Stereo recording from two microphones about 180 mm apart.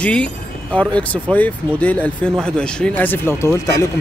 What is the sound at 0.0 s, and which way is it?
Speech, 5° left (ahead or behind).